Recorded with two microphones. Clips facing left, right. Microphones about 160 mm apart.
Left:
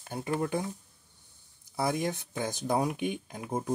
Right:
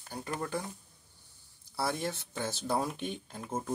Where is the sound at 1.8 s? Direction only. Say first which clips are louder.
Left 4 dB; 15° left (ahead or behind).